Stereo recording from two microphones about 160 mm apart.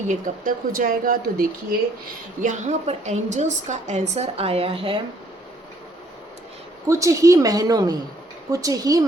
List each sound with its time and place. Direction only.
0.1 s speech: 60° right (ahead or behind)
2.4 s a woman's voice: 50° right (ahead or behind)
6.8 s a woman's voice: 20° right (ahead or behind)